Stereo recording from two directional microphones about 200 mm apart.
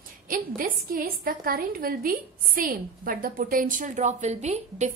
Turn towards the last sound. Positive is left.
turn(degrees=-35)  # may be behind; listen again after turning